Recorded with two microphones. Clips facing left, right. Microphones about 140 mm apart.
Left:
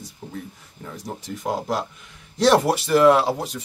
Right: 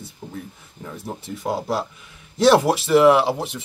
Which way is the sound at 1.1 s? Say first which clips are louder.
Right 1 dB; 5° right (ahead or behind).